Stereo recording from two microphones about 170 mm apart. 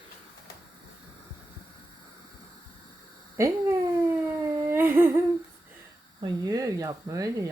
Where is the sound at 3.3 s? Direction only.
15° right (ahead or behind).